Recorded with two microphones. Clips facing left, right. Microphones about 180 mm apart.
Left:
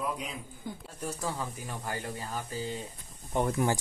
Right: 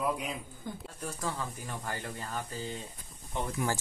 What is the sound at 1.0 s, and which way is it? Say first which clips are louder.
Speech: left 2 dB; 10° left (ahead or behind).